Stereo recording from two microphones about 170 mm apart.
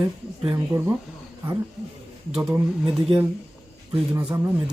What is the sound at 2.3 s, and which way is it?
Speech, centre (ahead or behind).